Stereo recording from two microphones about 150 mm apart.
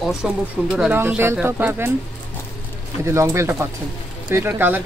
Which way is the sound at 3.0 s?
20° right (ahead or behind).